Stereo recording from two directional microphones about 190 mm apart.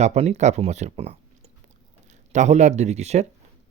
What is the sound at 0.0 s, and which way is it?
Speech, 35° right (ahead or behind).